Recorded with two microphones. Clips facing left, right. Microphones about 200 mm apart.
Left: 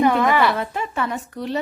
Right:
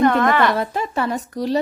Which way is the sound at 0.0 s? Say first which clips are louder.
Right 1 dB; 10° left (ahead or behind).